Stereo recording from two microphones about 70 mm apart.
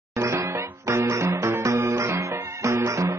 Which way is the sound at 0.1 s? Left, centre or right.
Right.